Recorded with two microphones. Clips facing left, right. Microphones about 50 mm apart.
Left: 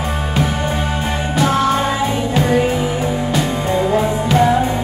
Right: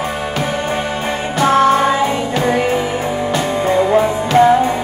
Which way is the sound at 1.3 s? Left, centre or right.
Right.